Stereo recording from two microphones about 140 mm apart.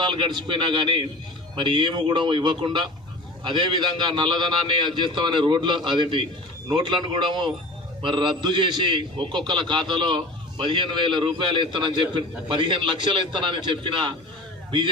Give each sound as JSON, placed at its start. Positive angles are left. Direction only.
{"t": 0.0, "sound": "a man's voice", "side_deg": -35}